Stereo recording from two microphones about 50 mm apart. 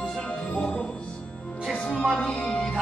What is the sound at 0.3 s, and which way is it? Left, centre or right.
Music, centre.